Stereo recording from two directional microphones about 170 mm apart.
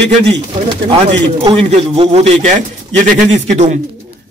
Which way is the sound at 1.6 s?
35° right (ahead or behind).